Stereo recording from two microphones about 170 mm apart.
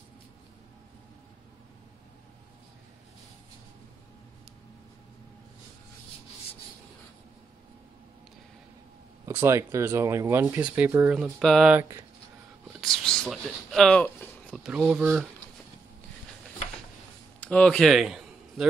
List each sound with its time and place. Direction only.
9.2 s speech: 15° right (ahead or behind)
11.3 s speech: centre (ahead or behind)
12.8 s a sound: 5° left (ahead or behind)
14.6 s speech: 5° right (ahead or behind)
17.4 s speech: 5° left (ahead or behind)